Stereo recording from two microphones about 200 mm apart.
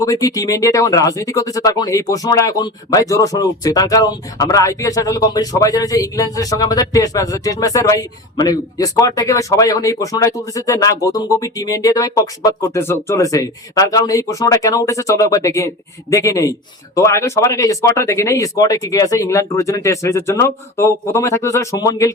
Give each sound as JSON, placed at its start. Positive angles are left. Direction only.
{"t": 0.0, "sound": "speech", "side_deg": 15}